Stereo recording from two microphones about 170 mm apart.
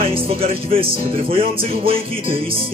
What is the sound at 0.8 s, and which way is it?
Speech, 35° right (ahead or behind).